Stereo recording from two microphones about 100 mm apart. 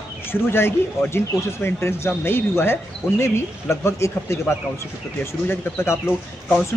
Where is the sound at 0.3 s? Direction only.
25° left (ahead or behind).